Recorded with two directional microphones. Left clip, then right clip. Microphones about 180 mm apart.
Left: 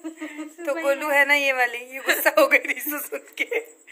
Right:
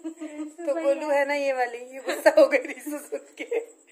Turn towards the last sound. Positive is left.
turn(degrees=-10)  # may be behind; listen again after turning